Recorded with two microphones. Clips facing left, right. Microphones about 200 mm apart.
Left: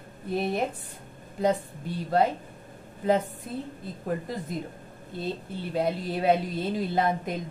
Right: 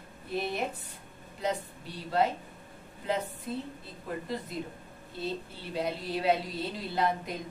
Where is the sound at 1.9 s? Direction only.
50° left (ahead or behind).